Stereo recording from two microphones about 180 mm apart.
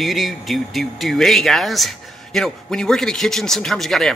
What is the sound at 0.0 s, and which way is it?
A man's voice, centre (ahead or behind).